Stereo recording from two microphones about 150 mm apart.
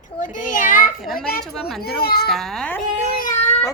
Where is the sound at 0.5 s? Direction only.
65° left (ahead or behind).